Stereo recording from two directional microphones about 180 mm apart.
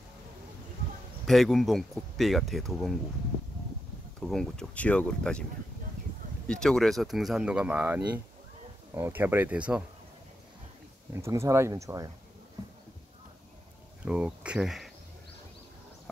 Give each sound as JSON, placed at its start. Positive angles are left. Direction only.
{"t": 1.2, "sound": "speech", "side_deg": 0}
{"t": 4.2, "sound": "speech", "side_deg": 0}
{"t": 6.4, "sound": "speech", "side_deg": 5}
{"t": 11.1, "sound": "speech", "side_deg": -15}
{"t": 14.0, "sound": "speech", "side_deg": -5}